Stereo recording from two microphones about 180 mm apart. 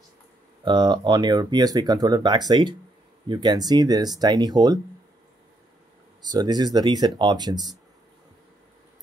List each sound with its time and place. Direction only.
0.7 s speech: 25° right (ahead or behind)
6.3 s speech: 25° right (ahead or behind)